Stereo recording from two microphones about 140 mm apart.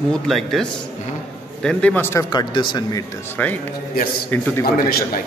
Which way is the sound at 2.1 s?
30° left (ahead or behind).